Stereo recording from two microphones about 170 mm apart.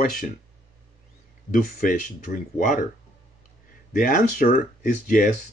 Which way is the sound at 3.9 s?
50° left (ahead or behind).